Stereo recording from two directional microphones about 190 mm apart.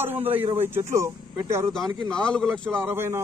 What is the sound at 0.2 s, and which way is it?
Speech, 30° right (ahead or behind).